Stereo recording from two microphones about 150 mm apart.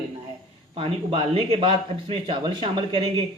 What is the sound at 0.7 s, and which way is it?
Speech, 35° right (ahead or behind).